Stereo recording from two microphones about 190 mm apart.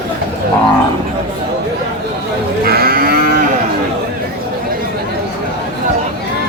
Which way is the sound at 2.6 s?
50° right (ahead or behind).